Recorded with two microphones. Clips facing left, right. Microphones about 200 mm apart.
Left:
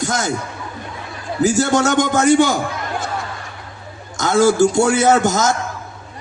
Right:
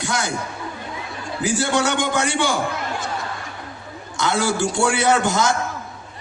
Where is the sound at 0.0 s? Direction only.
45° left (ahead or behind).